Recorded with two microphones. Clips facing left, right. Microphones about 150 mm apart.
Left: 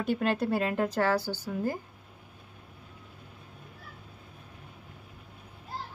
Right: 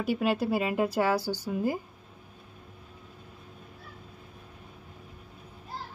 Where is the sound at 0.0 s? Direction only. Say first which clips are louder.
Right 1 dB; 5° right (ahead or behind).